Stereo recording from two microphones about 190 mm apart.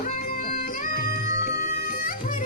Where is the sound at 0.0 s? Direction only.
45° left (ahead or behind).